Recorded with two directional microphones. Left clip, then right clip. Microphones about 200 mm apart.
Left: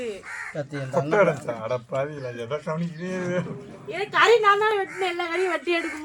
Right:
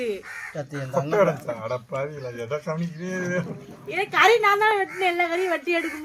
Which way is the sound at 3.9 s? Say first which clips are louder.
Even; 45° right (ahead or behind).